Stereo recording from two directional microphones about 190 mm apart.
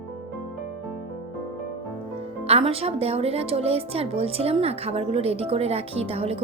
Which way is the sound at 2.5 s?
30° right (ahead or behind).